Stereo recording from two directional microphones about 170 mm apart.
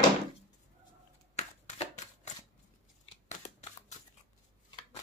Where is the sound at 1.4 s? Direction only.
40° left (ahead or behind).